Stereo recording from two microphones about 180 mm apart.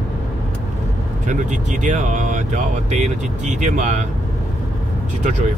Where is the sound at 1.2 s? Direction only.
40° right (ahead or behind).